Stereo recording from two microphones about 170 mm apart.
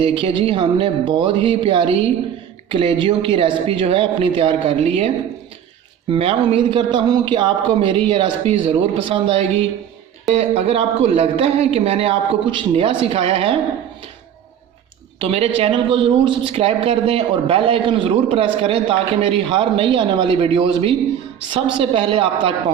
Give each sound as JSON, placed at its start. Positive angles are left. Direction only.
{"t": 0.0, "sound": "speech", "side_deg": -30}
{"t": 15.2, "sound": "speech", "side_deg": -35}